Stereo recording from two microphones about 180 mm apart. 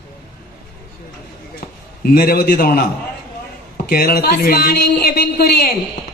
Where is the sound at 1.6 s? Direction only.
55° left (ahead or behind).